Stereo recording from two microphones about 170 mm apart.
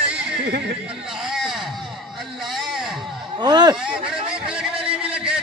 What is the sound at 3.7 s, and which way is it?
Speech, 5° right (ahead or behind).